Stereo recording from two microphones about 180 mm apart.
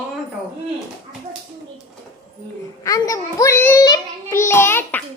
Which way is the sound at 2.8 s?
20° left (ahead or behind).